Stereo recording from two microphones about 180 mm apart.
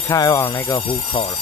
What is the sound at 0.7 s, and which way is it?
Speech, 30° left (ahead or behind).